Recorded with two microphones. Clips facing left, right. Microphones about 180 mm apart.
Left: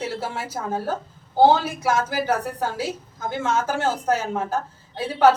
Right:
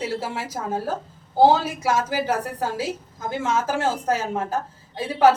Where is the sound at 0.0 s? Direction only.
5° right (ahead or behind).